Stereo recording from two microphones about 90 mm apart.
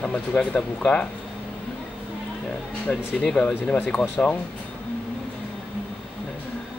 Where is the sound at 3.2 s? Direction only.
5° left (ahead or behind).